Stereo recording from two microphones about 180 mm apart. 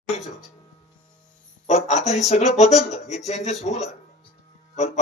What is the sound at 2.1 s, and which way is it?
Speech, 40° left (ahead or behind).